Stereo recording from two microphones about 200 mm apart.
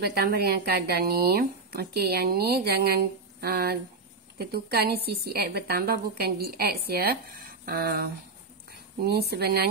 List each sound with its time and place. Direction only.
0.0 s speech: 55° right (ahead or behind)